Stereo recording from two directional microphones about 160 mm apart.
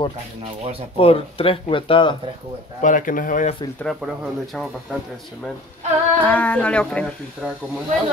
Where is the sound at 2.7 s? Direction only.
55° left (ahead or behind).